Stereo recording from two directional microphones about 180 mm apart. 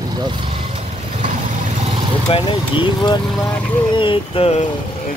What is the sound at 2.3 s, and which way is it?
Speech, 25° left (ahead or behind).